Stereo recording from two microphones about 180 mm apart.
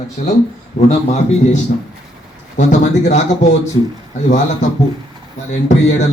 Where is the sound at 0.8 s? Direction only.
40° left (ahead or behind).